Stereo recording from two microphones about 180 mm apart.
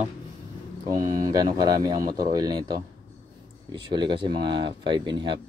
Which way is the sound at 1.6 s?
20° right (ahead or behind).